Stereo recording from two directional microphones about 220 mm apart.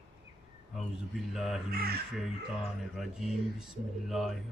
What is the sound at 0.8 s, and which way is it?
Speech, centre (ahead or behind).